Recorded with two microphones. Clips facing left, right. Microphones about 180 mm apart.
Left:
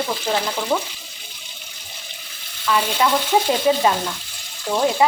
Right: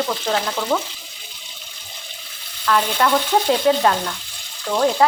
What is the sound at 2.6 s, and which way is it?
Frying, 5° left (ahead or behind).